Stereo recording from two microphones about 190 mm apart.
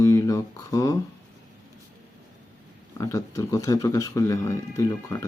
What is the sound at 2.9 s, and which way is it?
Speech, 15° left (ahead or behind).